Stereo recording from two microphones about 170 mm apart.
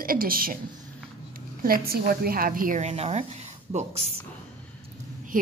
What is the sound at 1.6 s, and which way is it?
A woman's voice, 60° right (ahead or behind).